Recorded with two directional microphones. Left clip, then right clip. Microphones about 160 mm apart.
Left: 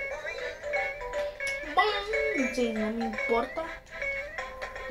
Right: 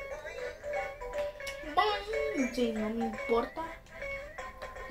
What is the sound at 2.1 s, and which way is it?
Speech, 15° left (ahead or behind).